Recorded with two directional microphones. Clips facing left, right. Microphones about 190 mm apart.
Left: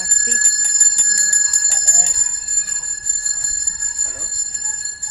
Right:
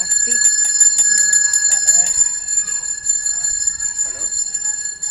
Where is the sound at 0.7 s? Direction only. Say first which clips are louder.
Right 1 dB; 65° right (ahead or behind).